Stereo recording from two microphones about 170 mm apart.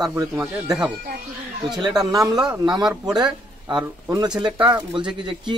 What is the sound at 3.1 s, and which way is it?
Speech, 25° right (ahead or behind).